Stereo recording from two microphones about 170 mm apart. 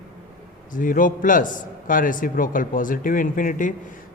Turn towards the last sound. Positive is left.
turn(degrees=50)  # may be behind; listen again after turning